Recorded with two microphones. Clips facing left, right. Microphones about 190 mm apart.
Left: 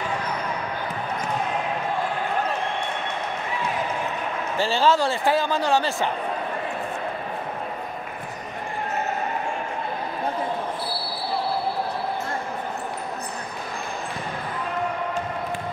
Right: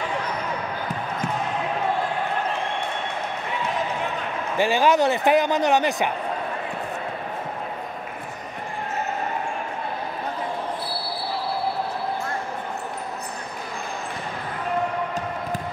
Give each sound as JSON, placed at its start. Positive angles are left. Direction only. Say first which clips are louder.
{"t": 4.6, "sound": "speech", "louder": "right 2 dB", "side_deg": -15}